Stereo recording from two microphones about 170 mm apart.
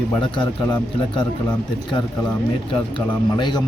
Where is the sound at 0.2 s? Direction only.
30° left (ahead or behind).